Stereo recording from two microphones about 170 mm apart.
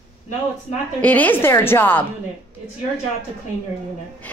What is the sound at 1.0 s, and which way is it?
A woman's voice, 10° left (ahead or behind).